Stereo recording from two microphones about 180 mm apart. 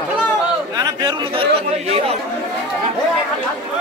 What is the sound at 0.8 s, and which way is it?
Speech, 20° right (ahead or behind).